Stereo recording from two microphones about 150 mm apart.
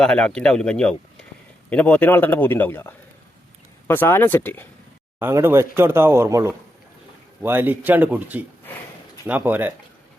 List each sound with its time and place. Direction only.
0.0 s a man's voice: 5° left (ahead or behind)
5.2 s speech: 15° right (ahead or behind)